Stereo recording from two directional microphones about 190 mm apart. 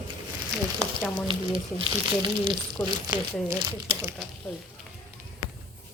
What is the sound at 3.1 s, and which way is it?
Speech, 15° right (ahead or behind).